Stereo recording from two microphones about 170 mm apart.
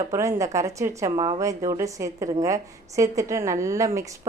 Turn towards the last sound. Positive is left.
turn(degrees=-15)  # may be behind; listen again after turning